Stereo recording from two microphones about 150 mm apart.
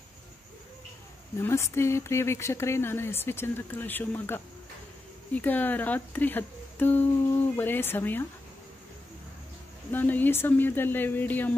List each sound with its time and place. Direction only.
1.4 s speech: 20° left (ahead or behind)
9.8 s speech: 10° left (ahead or behind)